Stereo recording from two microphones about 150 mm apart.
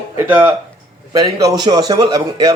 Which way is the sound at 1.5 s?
25° right (ahead or behind).